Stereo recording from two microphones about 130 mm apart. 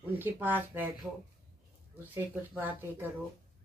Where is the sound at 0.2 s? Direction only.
15° right (ahead or behind).